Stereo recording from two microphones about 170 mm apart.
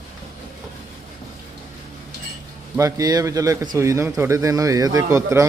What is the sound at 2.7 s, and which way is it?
A man's voice, 20° right (ahead or behind).